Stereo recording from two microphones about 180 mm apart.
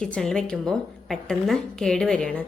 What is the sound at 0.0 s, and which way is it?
A woman's voice, 5° left (ahead or behind).